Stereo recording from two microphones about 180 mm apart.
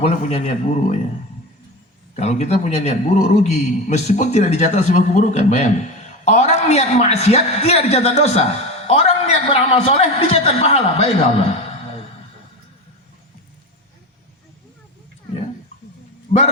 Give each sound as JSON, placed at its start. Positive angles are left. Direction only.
{"t": 0.0, "sound": "a man's voice", "side_deg": 35}
{"t": 2.1, "sound": "a man's voice", "side_deg": 40}